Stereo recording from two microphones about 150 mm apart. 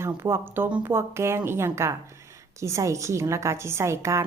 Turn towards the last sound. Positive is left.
turn(degrees=-20)  # may be behind; listen again after turning